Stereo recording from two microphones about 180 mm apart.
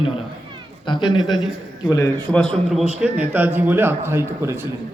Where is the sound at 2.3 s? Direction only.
5° left (ahead or behind); by 4.7 s 15° right (ahead or behind).